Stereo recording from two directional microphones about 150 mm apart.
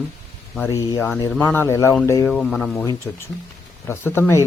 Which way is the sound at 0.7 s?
20° left (ahead or behind).